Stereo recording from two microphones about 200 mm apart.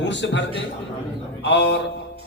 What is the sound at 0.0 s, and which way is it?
A man's voice, 60° left (ahead or behind).